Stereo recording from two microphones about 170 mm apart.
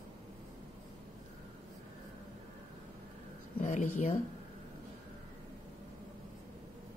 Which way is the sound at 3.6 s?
45° left (ahead or behind).